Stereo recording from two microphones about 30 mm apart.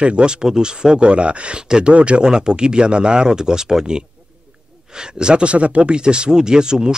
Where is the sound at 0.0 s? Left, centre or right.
Right.